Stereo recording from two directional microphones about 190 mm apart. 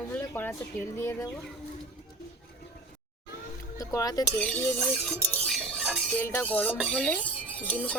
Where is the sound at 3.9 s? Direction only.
20° left (ahead or behind).